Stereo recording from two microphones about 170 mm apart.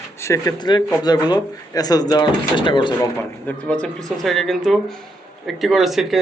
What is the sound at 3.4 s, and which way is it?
Speech, 5° left (ahead or behind).